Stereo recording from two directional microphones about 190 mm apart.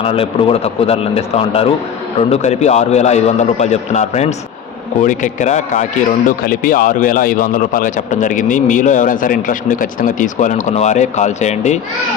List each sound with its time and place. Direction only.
0.0 s a man's voice: 30° left (ahead or behind)